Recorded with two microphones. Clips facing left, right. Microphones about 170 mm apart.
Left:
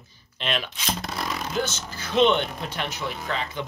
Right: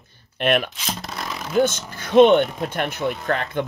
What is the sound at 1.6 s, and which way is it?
Speech, 55° right (ahead or behind).